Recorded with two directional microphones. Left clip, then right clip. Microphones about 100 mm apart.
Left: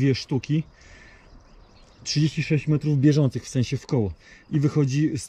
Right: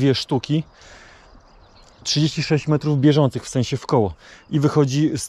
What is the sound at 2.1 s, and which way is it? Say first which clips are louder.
Speech: right 5 dB; 20° left (ahead or behind).